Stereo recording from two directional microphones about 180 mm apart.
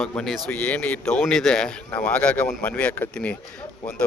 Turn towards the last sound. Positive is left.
turn(degrees=10)  # may be behind; listen again after turning